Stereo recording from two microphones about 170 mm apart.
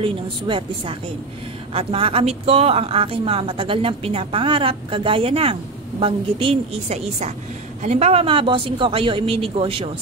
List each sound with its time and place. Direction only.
0.0 s a woman's voice: 30° right (ahead or behind)